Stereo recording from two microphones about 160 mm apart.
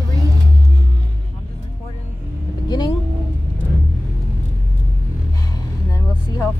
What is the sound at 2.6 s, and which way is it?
Vehicle, 25° left (ahead or behind).